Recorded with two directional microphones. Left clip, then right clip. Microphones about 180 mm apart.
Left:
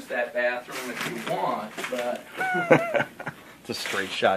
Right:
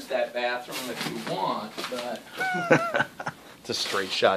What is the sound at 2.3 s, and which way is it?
Speech, 5° right (ahead or behind).